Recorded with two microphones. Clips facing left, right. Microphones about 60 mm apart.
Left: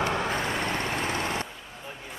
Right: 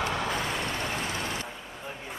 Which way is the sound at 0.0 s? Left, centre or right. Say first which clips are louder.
Left 2 dB; left.